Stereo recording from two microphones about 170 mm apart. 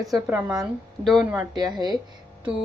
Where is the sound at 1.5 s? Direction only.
25° right (ahead or behind).